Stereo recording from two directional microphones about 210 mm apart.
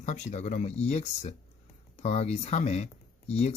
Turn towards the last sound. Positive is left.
turn(degrees=30)  # may be behind; listen again after turning